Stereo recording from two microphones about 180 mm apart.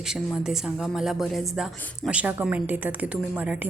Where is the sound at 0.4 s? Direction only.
5° right (ahead or behind).